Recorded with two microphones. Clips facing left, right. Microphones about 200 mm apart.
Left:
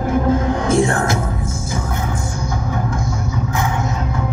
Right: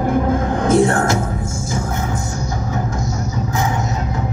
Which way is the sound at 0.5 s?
50° right (ahead or behind).